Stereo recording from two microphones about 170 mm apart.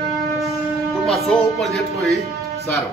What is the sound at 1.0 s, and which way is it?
Speech, centre (ahead or behind).